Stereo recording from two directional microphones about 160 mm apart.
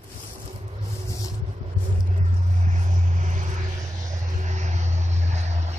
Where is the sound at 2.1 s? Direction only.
45° right (ahead or behind).